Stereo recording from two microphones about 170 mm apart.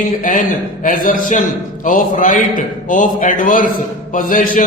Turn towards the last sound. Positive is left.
turn(degrees=50)  # may be behind; listen again after turning